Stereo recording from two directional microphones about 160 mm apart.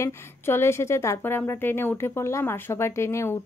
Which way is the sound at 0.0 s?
15° left (ahead or behind).